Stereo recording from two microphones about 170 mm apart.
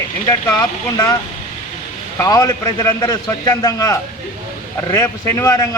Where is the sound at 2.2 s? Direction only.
20° left (ahead or behind).